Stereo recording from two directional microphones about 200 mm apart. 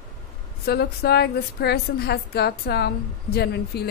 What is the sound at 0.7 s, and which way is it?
A woman's voice, 55° left (ahead or behind).